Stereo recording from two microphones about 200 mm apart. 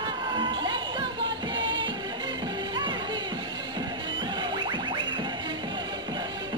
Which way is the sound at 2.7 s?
25° right (ahead or behind).